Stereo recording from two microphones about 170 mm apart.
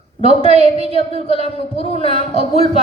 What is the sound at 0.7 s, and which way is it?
A woman's voice, 35° left (ahead or behind).